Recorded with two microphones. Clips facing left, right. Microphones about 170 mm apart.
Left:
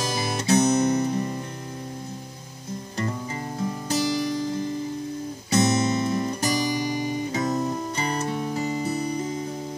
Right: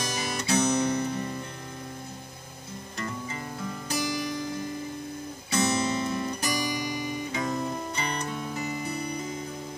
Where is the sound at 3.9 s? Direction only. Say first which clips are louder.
Left 5 dB; 35° left (ahead or behind).